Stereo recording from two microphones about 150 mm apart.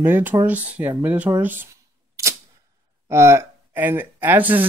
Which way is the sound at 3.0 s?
20° right (ahead or behind).